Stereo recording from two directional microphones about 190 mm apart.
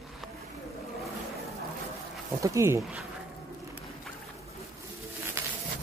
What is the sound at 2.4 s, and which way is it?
Speech, 15° right (ahead or behind).